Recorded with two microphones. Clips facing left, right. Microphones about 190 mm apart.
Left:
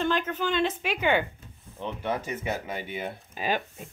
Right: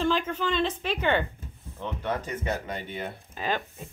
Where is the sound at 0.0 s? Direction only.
Centre (ahead or behind).